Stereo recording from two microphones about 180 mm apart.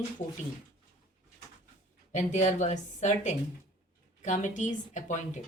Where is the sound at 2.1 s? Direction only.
40° left (ahead or behind).